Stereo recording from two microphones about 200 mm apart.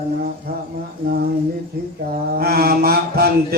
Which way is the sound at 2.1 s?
50° right (ahead or behind).